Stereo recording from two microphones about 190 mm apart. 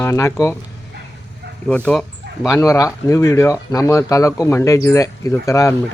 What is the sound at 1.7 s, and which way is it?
Speech, 5° left (ahead or behind).